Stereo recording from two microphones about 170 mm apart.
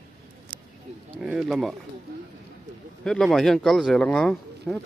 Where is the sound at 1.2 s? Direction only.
5° right (ahead or behind).